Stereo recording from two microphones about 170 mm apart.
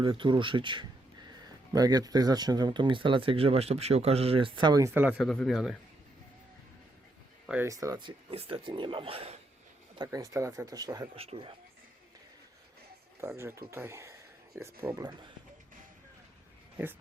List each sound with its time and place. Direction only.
0.0 s speech: 30° right (ahead or behind)
5.1 s speech: 5° left (ahead or behind)
7.4 s speech: 10° right (ahead or behind)
7.7 s speech: 20° right (ahead or behind); by 9.4 s 35° right (ahead or behind)
9.9 s speech: 20° right (ahead or behind)
11.1 s speech: 35° right (ahead or behind)
13.2 s speech: 15° right (ahead or behind)